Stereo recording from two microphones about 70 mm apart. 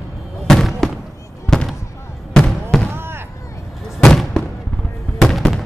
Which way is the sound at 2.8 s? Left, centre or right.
Right.